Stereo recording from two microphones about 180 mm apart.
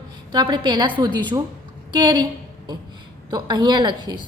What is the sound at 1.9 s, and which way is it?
Speech, 25° right (ahead or behind).